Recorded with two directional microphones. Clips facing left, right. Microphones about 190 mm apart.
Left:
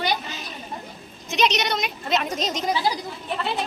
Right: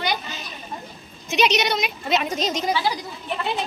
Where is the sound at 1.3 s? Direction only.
5° right (ahead or behind).